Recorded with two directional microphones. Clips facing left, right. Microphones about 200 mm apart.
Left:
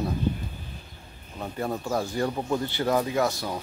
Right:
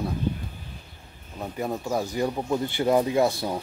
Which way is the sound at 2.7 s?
25° right (ahead or behind).